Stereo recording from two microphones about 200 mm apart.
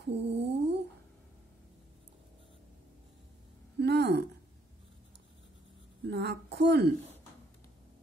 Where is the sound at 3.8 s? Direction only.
55° right (ahead or behind).